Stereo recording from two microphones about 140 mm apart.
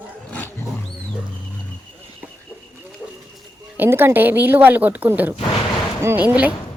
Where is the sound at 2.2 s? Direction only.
10° right (ahead or behind).